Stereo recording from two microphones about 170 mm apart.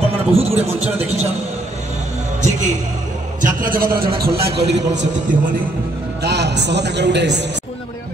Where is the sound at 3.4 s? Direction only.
55° right (ahead or behind).